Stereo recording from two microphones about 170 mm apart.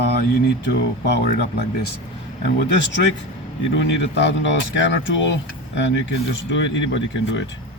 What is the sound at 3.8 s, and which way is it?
Speech, 90° left.